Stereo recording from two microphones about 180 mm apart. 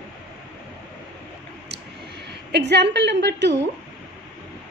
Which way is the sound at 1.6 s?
70° right (ahead or behind).